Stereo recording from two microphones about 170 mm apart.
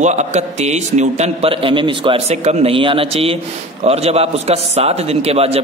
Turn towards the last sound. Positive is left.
turn(degrees=-35)  # may be behind; listen again after turning